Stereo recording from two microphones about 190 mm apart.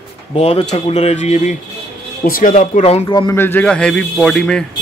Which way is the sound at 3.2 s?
10° left (ahead or behind).